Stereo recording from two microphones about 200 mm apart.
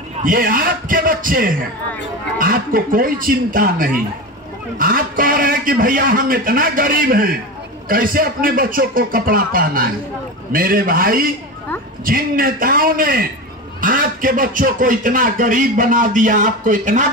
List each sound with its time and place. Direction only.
0.2 s a man's voice: 45° right (ahead or behind)